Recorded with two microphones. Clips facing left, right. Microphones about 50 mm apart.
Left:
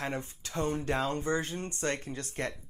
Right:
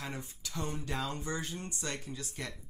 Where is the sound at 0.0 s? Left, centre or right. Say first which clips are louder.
Left 6 dB; left.